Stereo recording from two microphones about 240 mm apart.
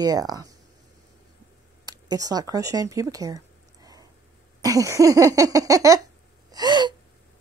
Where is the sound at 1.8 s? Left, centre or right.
Centre.